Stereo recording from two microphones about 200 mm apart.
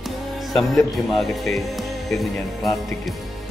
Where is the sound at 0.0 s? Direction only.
Centre (ahead or behind).